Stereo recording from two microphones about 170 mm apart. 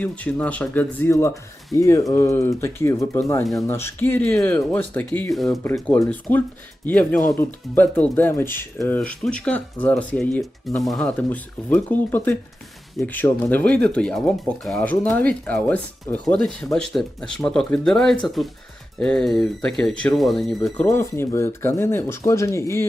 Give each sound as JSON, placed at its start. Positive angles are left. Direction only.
{"t": 0.0, "sound": "speech", "side_deg": 10}
{"t": 20.8, "sound": "speech", "side_deg": 15}